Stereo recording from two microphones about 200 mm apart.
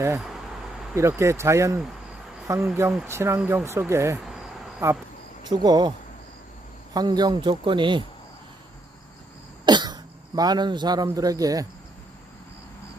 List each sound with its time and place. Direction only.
0.2 s a sound: centre (ahead or behind)
0.9 s speech: 15° right (ahead or behind)
6.9 s speech: 20° right (ahead or behind)
9.6 s speech: 20° right (ahead or behind)